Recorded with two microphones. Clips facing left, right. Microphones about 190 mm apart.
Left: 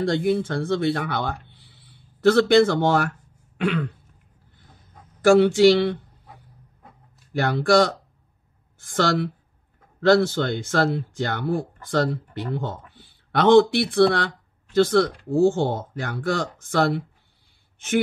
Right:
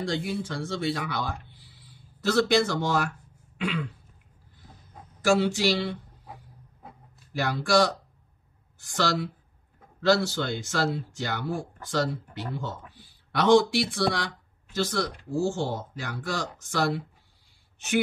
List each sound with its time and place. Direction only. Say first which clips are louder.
0.0 s speech: left 8 dB; 55° left (ahead or behind)
3.5 s throat clearing: left 6 dB; 60° left (ahead or behind)
5.2 s speech: left 9 dB; 55° left (ahead or behind)
7.3 s speech: left 5 dB; 55° left (ahead or behind)